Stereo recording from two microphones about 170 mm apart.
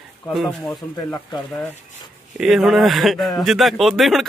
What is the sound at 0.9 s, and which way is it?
Speech, 25° left (ahead or behind).